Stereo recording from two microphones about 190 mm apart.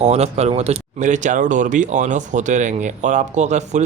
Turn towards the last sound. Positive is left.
turn(degrees=-40)  # may be behind; listen again after turning